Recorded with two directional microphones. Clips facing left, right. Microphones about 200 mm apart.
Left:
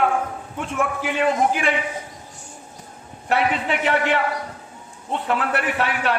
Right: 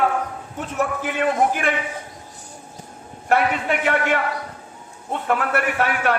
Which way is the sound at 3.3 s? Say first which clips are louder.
Right 1 dB; 50° right (ahead or behind).